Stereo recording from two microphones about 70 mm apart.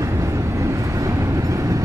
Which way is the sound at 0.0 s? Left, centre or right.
Right.